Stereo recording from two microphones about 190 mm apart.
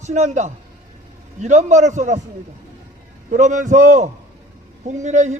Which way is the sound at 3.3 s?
40° right (ahead or behind).